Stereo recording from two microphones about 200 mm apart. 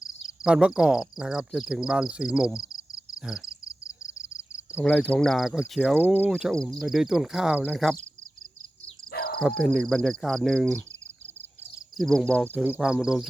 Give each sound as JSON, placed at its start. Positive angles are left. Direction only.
{"t": 0.4, "sound": "speech", "side_deg": -5}
{"t": 4.8, "sound": "speech", "side_deg": 5}
{"t": 9.1, "sound": "cricket", "side_deg": 50}
{"t": 9.4, "sound": "speech", "side_deg": 0}
{"t": 11.9, "sound": "speech", "side_deg": 0}